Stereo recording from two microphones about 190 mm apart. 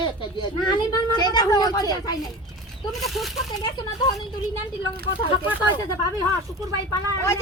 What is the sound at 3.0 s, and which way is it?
Speech, centre (ahead or behind).